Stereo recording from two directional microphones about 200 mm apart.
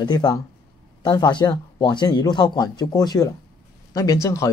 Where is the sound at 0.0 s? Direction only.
20° left (ahead or behind).